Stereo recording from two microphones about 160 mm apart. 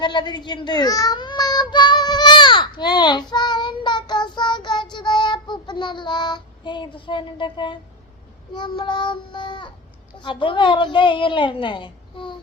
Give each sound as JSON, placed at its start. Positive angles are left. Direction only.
{"t": 0.0, "sound": "child singing", "side_deg": 30}
{"t": 10.2, "sound": "a woman's voice", "side_deg": 30}